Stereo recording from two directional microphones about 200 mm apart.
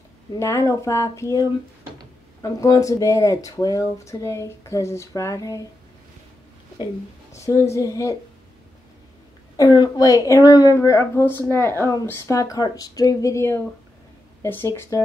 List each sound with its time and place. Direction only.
0.3 s a woman's voice: 15° left (ahead or behind)
7.3 s a woman's voice: 15° left (ahead or behind)
9.6 s a woman's voice: 20° left (ahead or behind)